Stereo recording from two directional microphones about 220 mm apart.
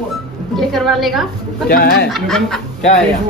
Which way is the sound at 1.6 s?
45° left (ahead or behind).